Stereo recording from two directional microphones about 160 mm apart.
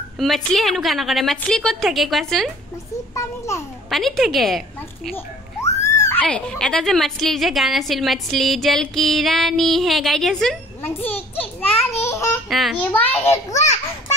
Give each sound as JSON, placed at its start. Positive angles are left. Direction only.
{"t": 0.2, "sound": "a woman's voice", "side_deg": 0}
{"t": 3.2, "sound": "a child's voice", "side_deg": 20}
{"t": 3.9, "sound": "a woman's voice", "side_deg": 0}
{"t": 5.7, "sound": "a sound", "side_deg": 20}
{"t": 6.2, "sound": "a woman's voice", "side_deg": 5}
{"t": 10.8, "sound": "a child's voice", "side_deg": 15}
{"t": 12.0, "sound": "babbling", "side_deg": 15}
{"t": 12.4, "sound": "a child's voice", "side_deg": 0}
{"t": 12.9, "sound": "a child's voice", "side_deg": 10}